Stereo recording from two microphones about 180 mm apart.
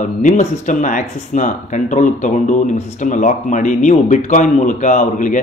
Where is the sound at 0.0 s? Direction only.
40° left (ahead or behind).